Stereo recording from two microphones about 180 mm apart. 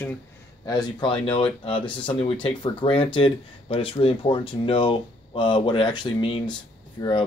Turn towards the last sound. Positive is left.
turn(degrees=25)  # may be behind; listen again after turning